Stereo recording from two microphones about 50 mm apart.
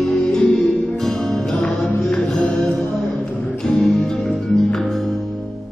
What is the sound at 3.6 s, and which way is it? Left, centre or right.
Music, centre.